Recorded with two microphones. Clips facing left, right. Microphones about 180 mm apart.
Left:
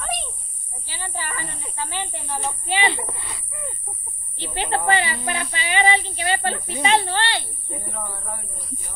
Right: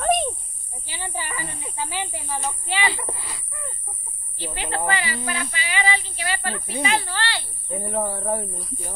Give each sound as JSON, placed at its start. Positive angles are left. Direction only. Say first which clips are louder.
{"t": 0.0, "sound": "snake", "louder": "right 9 dB", "side_deg": -50}
{"t": 0.8, "sound": "snake", "louder": "even", "side_deg": -15}
{"t": 1.4, "sound": "speech", "louder": "right 1 dB", "side_deg": 0}
{"t": 2.6, "sound": "speech", "louder": "left 4 dB", "side_deg": 20}
{"t": 3.1, "sound": "speech", "louder": "right 2 dB", "side_deg": 0}
{"t": 4.4, "sound": "speech", "louder": "left 3 dB", "side_deg": 25}
{"t": 7.9, "sound": "speech", "louder": "right 13 dB", "side_deg": -35}